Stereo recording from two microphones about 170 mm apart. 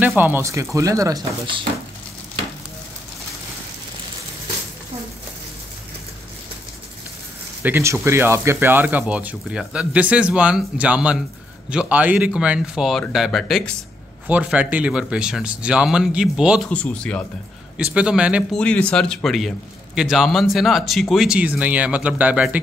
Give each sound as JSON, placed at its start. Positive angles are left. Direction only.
{"t": 0.0, "sound": "speech", "side_deg": -10}
{"t": 7.6, "sound": "speech", "side_deg": -15}
{"t": 16.6, "sound": "speech", "side_deg": 5}
{"t": 17.9, "sound": "speech", "side_deg": -5}
{"t": 18.6, "sound": "speech", "side_deg": 5}